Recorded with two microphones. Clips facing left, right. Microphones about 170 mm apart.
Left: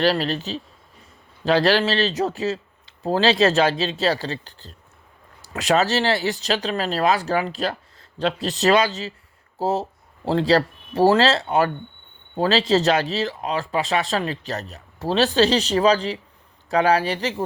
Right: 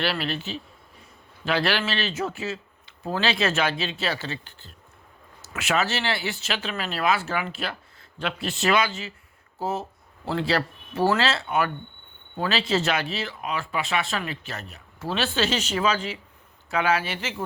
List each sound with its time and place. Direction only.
0.0 s speech: 40° left (ahead or behind)